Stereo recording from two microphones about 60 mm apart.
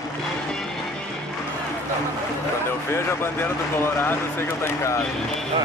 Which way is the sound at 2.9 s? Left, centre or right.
Left.